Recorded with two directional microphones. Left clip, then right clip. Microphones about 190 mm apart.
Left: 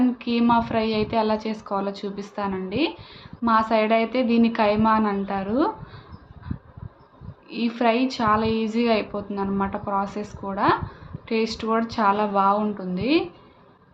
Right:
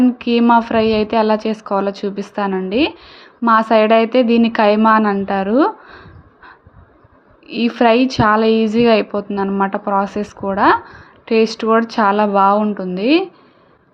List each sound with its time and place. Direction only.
0.2 s a woman's voice: 40° right (ahead or behind)
7.4 s a woman's voice: 40° right (ahead or behind)